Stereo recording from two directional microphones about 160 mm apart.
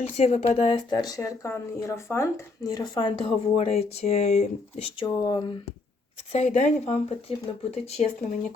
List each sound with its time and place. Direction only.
0.0 s a woman's voice: 45° left (ahead or behind)
4.9 s a woman's voice: 25° left (ahead or behind)
6.3 s speech: 50° left (ahead or behind)